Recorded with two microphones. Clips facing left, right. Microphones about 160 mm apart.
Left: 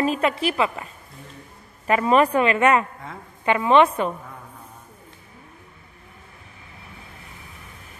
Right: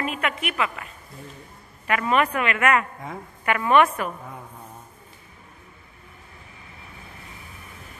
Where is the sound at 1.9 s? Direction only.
30° left (ahead or behind).